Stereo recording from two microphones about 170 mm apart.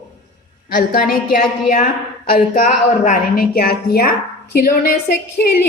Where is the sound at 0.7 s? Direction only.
55° left (ahead or behind).